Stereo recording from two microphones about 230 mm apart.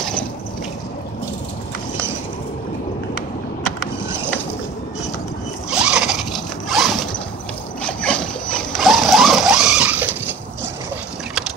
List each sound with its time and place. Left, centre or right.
5.8 s zipper: centre
6.7 s mechanisms: centre
7.8 s a sound: centre